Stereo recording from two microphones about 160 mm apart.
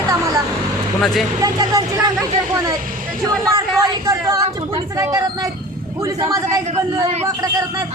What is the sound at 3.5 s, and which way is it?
A man's voice, 20° right (ahead or behind).